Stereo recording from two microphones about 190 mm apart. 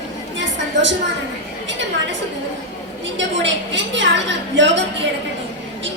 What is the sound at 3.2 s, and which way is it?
A woman's voice, 70° right (ahead or behind).